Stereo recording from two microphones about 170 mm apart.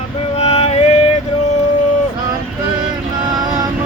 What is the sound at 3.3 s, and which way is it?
Music, 25° right (ahead or behind).